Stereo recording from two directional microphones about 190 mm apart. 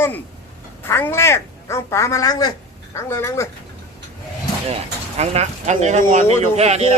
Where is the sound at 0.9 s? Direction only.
10° left (ahead or behind).